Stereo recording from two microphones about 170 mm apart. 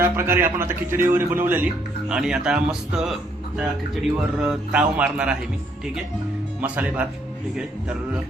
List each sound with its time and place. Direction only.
0.0 s a man's voice: 15° right (ahead or behind)
4.4 s a man's voice: 5° right (ahead or behind)
6.6 s a man's voice: 10° right (ahead or behind)